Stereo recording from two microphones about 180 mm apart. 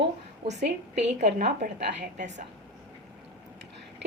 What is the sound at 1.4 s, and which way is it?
Speech, 65° right (ahead or behind).